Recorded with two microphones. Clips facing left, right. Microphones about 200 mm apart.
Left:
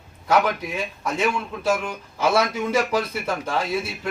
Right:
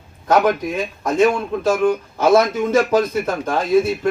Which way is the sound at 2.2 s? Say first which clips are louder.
Right 6 dB; 50° right (ahead or behind).